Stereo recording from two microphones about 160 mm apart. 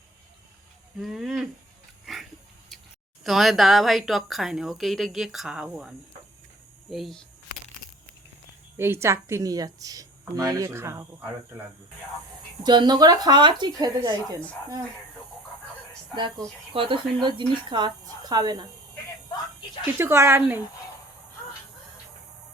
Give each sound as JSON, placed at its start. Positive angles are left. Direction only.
{"t": 0.9, "sound": "speech", "side_deg": 0}
{"t": 3.2, "sound": "a woman's voice", "side_deg": 0}
{"t": 6.9, "sound": "a woman's voice", "side_deg": 0}
{"t": 8.8, "sound": "speech", "side_deg": -15}
{"t": 12.6, "sound": "speech", "side_deg": -25}
{"t": 16.1, "sound": "speech", "side_deg": -30}
{"t": 19.8, "sound": "speech", "side_deg": -15}